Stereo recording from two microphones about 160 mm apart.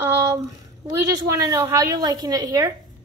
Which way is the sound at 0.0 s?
20° right (ahead or behind).